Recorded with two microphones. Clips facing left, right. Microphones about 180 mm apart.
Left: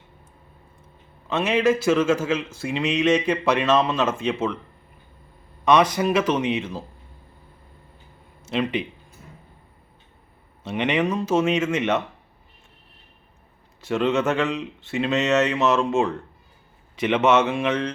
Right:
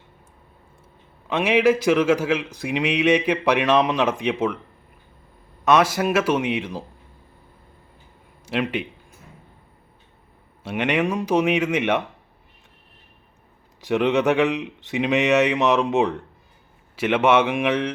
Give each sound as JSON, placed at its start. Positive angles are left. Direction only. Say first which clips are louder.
{"t": 1.3, "sound": "a man's voice", "louder": "right 2 dB", "side_deg": -10}
{"t": 5.6, "sound": "a man's voice", "louder": "even", "side_deg": -5}
{"t": 8.4, "sound": "a man's voice", "louder": "even", "side_deg": -10}
{"t": 10.6, "sound": "a man's voice", "louder": "even", "side_deg": -10}
{"t": 13.8, "sound": "a man's voice", "louder": "right 2 dB", "side_deg": -15}